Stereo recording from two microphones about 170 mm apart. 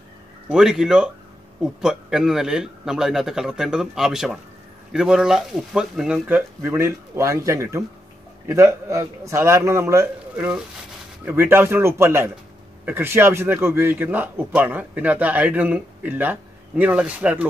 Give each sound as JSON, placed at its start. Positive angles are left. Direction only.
{"t": 0.5, "sound": "speech", "side_deg": -5}